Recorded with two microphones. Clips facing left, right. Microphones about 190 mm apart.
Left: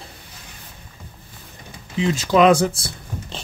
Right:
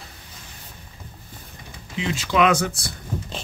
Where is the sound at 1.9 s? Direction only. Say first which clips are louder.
Left 5 dB; 40° left (ahead or behind).